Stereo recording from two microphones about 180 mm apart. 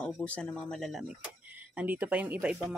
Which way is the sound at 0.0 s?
5° left (ahead or behind).